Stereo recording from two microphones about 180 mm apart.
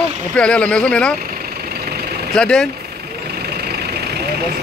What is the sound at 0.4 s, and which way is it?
Speech, 5° left (ahead or behind).